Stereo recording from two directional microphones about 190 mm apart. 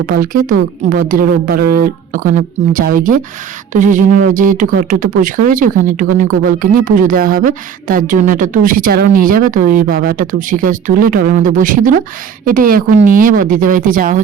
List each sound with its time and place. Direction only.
0.0 s speech: 50° right (ahead or behind)